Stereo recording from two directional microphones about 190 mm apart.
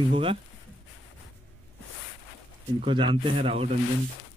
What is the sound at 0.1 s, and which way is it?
Speech, 30° right (ahead or behind).